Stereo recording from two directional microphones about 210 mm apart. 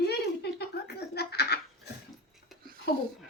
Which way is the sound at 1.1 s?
50° left (ahead or behind).